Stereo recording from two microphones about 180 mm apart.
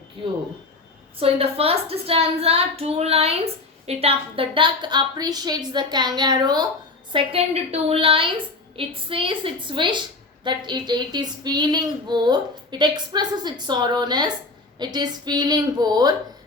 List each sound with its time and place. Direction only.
1.2 s a woman's voice: 30° right (ahead or behind)
7.1 s female singing: 30° right (ahead or behind)